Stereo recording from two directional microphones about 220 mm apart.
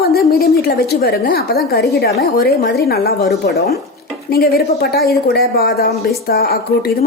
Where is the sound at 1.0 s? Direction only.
45° left (ahead or behind).